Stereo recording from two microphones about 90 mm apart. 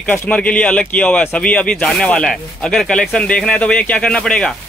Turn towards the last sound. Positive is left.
turn(degrees=10)  # may be behind; listen again after turning